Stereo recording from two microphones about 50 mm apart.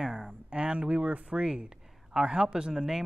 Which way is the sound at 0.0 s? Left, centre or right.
Centre.